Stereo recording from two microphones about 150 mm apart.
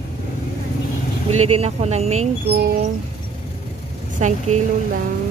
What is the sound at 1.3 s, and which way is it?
Speech, 45° right (ahead or behind).